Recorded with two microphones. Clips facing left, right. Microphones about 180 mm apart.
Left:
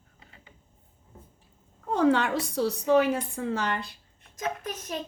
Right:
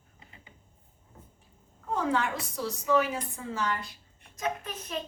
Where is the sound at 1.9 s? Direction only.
75° left (ahead or behind).